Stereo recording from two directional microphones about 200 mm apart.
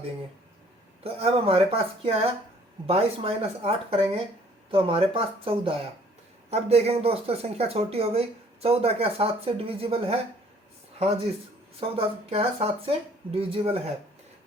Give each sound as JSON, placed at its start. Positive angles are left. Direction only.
{"t": 1.0, "sound": "speech", "side_deg": -30}
{"t": 11.8, "sound": "speech", "side_deg": -30}